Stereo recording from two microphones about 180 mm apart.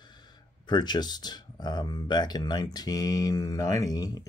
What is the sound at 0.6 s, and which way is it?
Speech, 25° left (ahead or behind).